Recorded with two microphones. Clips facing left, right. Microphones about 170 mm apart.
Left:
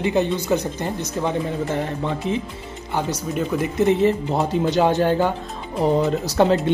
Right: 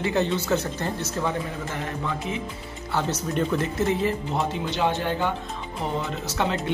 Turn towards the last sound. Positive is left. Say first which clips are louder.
# left 9 dB
turn(degrees=35)  # may be behind; listen again after turning